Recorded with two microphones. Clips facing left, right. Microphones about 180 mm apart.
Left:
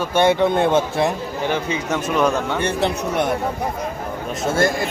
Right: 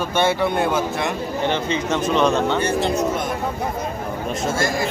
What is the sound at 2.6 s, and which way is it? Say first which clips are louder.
Speech: even; 60° left (ahead or behind).